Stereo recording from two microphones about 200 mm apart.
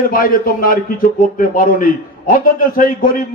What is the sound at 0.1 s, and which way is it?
A man's voice, 45° left (ahead or behind).